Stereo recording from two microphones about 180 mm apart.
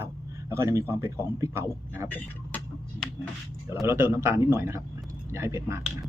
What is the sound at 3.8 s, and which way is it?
A man's voice, 15° right (ahead or behind).